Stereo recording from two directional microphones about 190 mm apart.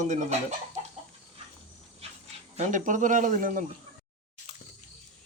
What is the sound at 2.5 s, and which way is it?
Speech, 40° right (ahead or behind).